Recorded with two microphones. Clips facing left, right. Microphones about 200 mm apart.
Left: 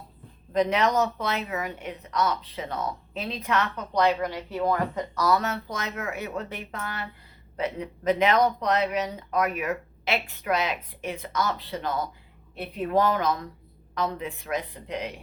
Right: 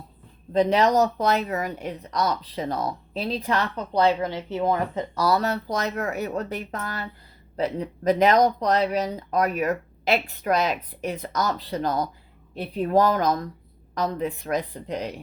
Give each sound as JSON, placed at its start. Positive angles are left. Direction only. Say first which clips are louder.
{"t": 0.5, "sound": "a woman's voice", "louder": "right 4 dB", "side_deg": -30}